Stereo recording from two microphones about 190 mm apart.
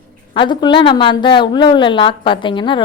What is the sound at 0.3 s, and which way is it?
A woman's voice, 25° left (ahead or behind).